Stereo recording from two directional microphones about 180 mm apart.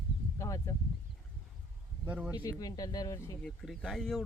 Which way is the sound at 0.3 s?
15° left (ahead or behind).